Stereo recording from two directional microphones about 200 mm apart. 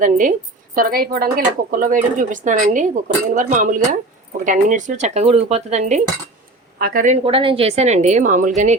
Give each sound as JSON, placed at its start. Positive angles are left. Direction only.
{"t": 0.0, "sound": "speech", "side_deg": -40}
{"t": 6.7, "sound": "speech", "side_deg": -45}